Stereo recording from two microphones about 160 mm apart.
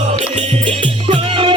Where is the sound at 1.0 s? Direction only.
35° right (ahead or behind).